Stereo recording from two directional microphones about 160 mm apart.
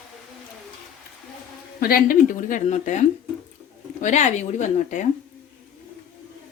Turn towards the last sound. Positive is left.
turn(degrees=50)  # may be behind; listen again after turning